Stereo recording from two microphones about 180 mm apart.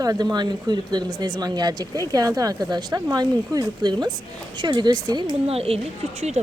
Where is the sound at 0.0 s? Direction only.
20° right (ahead or behind).